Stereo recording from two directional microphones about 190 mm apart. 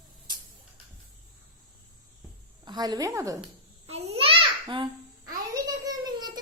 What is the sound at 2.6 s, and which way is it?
Speech, 20° right (ahead or behind).